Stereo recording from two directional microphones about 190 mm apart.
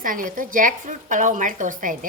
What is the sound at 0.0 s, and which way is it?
A woman's voice, 45° right (ahead or behind).